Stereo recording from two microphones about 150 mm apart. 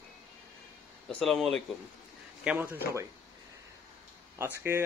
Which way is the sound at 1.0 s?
5° left (ahead or behind).